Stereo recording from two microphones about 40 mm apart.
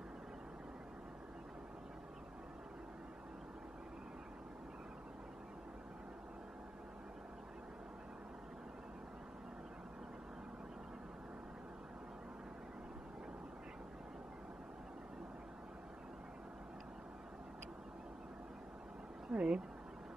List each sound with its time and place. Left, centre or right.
19.3 s speech: right